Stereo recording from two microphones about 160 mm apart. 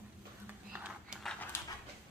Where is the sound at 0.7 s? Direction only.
5° right (ahead or behind).